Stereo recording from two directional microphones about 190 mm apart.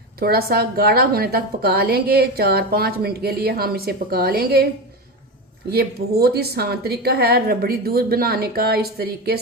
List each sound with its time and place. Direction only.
0.2 s a woman's voice: 55° right (ahead or behind)
5.7 s a woman's voice: 55° right (ahead or behind)